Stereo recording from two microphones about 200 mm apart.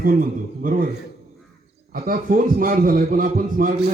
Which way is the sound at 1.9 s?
45° right (ahead or behind).